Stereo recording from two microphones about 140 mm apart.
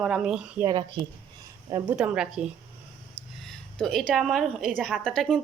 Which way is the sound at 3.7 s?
Centre (ahead or behind).